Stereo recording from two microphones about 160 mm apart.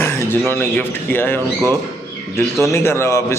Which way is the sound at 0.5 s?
15° left (ahead or behind).